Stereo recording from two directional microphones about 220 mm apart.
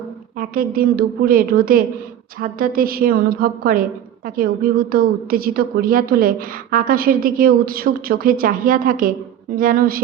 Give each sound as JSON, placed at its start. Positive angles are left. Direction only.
{"t": 0.3, "sound": "a woman's voice", "side_deg": -40}